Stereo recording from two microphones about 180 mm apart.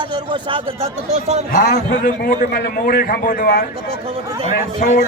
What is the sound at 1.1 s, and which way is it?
Speech, 40° right (ahead or behind).